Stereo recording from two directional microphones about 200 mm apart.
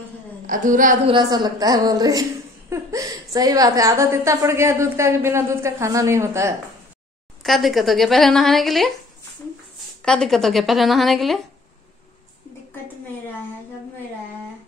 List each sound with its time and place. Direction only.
0.5 s a woman's voice: 40° right (ahead or behind)
1.0 s a woman's voice: 20° right (ahead or behind)
7.4 s a woman's voice: centre (ahead or behind)
10.0 s a woman's voice: centre (ahead or behind)